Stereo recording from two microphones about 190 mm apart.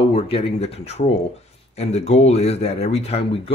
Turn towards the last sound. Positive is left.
turn(degrees=30)  # may be behind; listen again after turning